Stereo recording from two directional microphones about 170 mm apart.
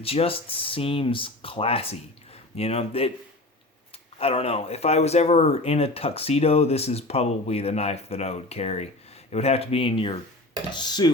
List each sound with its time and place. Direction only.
0.0 s speech: 35° left (ahead or behind)
4.2 s speech: 35° left (ahead or behind)